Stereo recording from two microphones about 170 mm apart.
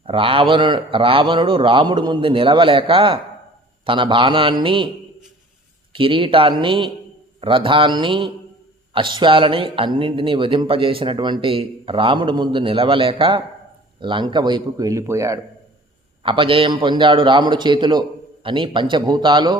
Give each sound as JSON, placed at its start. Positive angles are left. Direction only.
{"t": 0.0, "sound": "a man's voice", "side_deg": -30}
{"t": 5.9, "sound": "a man's voice", "side_deg": -30}
{"t": 16.2, "sound": "a man's voice", "side_deg": -30}